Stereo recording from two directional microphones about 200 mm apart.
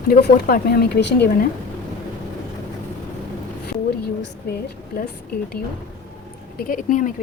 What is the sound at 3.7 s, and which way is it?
Speech, 55° left (ahead or behind).